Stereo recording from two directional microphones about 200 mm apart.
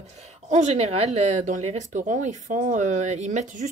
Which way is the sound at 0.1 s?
30° right (ahead or behind).